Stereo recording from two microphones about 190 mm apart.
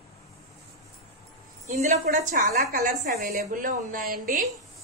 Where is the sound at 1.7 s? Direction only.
35° right (ahead or behind).